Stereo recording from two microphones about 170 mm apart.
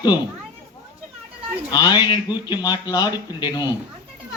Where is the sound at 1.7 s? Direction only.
25° left (ahead or behind).